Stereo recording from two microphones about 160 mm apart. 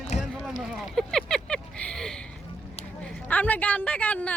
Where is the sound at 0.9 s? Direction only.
5° left (ahead or behind).